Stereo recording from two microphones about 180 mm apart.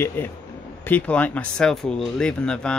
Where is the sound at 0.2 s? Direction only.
10° left (ahead or behind).